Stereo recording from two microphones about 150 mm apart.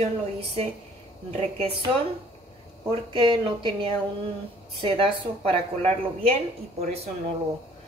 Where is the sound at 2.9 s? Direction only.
30° right (ahead or behind).